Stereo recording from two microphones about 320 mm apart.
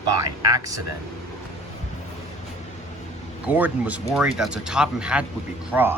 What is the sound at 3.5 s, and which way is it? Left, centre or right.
Speech, centre.